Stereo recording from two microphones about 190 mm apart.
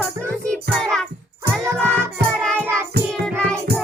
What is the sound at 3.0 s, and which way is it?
Singing, 60° right (ahead or behind).